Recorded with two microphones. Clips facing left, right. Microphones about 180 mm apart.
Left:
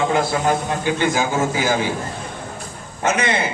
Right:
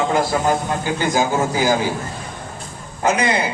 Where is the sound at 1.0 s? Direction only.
40° right (ahead or behind).